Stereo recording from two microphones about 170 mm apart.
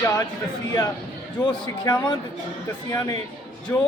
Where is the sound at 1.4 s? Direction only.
20° left (ahead or behind).